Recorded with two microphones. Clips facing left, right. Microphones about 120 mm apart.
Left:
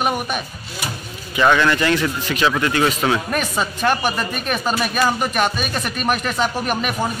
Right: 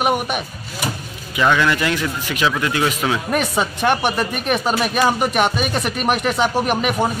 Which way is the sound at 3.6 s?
20° right (ahead or behind).